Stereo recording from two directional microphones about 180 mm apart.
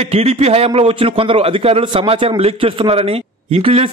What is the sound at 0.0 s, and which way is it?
A man's voice, 35° right (ahead or behind).